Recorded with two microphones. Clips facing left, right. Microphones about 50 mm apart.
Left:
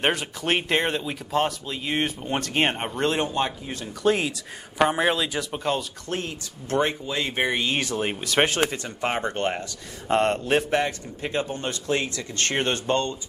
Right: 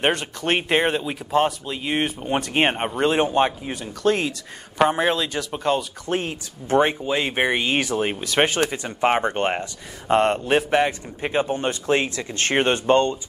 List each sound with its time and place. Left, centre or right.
0.0 s speech: centre
0.6 s speech: centre
3.3 s a man's voice: right
4.0 s speech: centre
6.0 s a man's voice: right; by 8.5 s centre
8.6 s a man's voice: right
10.0 s a man's voice: centre